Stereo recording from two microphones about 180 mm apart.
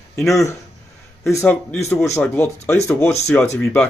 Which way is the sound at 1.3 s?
10° left (ahead or behind).